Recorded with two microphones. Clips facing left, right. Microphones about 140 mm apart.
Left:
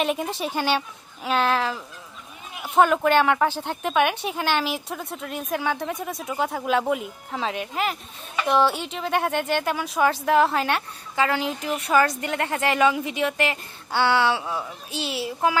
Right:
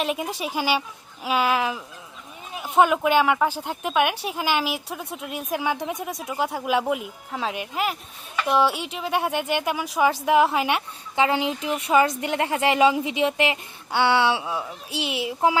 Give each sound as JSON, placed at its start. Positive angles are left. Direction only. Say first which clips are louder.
{"t": 0.0, "sound": "a woman's voice", "louder": "left 1 dB", "side_deg": -5}
{"t": 14.4, "sound": "a woman's voice", "louder": "right 1 dB", "side_deg": -15}